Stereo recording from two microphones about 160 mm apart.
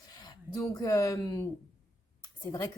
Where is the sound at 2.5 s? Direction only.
25° left (ahead or behind).